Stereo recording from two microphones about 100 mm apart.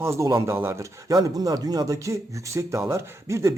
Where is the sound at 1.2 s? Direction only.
40° right (ahead or behind).